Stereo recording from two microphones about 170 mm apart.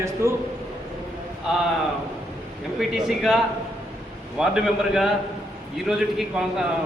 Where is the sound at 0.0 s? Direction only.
15° right (ahead or behind).